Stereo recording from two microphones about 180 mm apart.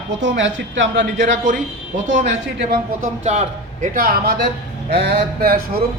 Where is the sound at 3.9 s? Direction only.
55° right (ahead or behind).